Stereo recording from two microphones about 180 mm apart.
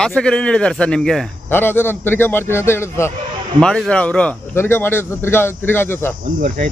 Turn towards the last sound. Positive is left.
turn(degrees=-45)  # may be behind; listen again after turning